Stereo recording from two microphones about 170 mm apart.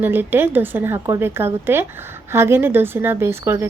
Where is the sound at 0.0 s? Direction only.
10° right (ahead or behind).